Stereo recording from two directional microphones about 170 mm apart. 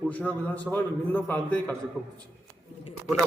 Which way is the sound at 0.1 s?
10° left (ahead or behind).